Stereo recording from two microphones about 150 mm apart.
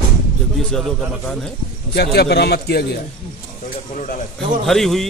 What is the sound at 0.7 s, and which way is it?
Speech, centre (ahead or behind).